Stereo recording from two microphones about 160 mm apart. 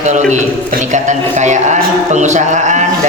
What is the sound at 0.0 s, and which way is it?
A man's voice, 50° right (ahead or behind).